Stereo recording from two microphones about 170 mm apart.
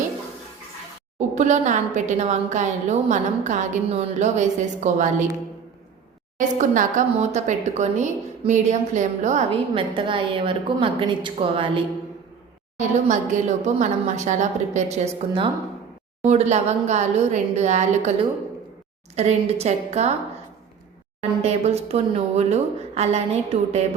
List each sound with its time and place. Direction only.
1.4 s a woman's voice: 45° right (ahead or behind)
6.6 s a woman's voice: 45° right (ahead or behind)
9.5 s speech: 30° right (ahead or behind)
13.1 s a woman's voice: 45° right (ahead or behind)
21.2 s speech: 40° right (ahead or behind)